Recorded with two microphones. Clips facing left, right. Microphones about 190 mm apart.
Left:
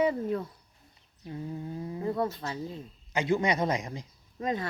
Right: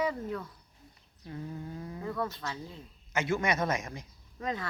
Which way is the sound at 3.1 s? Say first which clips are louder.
Left 3 dB; 15° left (ahead or behind).